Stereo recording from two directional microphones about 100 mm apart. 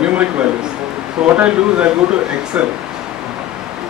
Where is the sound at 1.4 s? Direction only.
10° right (ahead or behind).